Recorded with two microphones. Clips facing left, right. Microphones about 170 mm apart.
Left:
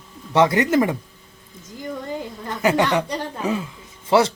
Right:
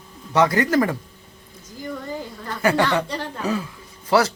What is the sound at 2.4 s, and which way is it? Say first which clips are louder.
A woman's voice: left 1 dB; 20° left (ahead or behind).